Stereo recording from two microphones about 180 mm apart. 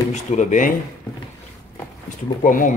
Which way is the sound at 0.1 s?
40° left (ahead or behind).